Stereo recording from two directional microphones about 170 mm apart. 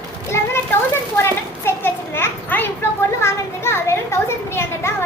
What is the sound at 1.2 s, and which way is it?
Children playing, 15° left (ahead or behind).